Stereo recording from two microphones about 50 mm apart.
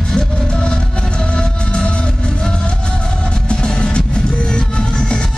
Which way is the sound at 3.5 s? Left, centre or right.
Centre.